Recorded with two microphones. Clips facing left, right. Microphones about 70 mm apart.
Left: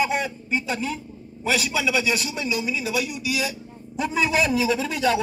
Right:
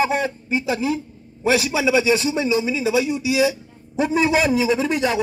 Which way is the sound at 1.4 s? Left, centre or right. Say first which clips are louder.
Right 5 dB; centre.